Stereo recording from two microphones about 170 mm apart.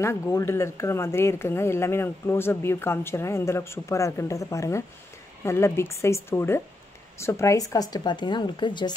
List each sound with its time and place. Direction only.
0.0 s speech: 15° left (ahead or behind)